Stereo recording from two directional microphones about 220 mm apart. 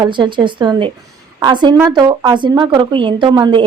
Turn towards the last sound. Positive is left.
turn(degrees=-20)  # may be behind; listen again after turning